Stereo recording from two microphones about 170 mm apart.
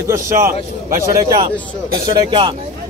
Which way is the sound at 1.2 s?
25° right (ahead or behind).